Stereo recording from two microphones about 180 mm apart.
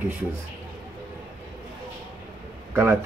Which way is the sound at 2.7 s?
10° right (ahead or behind).